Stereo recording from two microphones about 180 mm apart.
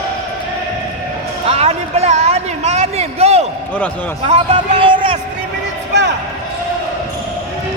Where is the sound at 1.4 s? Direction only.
35° right (ahead or behind).